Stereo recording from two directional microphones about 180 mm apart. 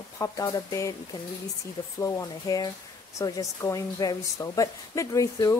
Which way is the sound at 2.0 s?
15° left (ahead or behind).